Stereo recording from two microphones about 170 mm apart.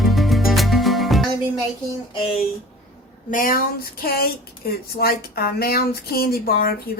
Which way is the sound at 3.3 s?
55° left (ahead or behind).